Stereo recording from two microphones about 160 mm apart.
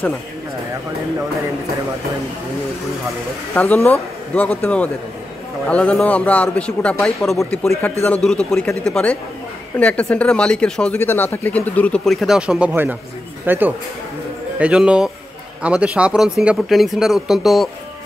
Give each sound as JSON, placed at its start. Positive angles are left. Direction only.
{"t": 3.5, "sound": "speech", "side_deg": 10}